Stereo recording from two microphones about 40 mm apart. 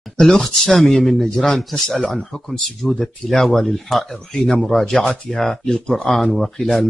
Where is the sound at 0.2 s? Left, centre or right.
Centre.